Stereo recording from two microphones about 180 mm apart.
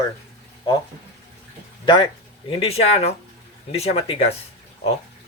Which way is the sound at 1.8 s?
25° left (ahead or behind).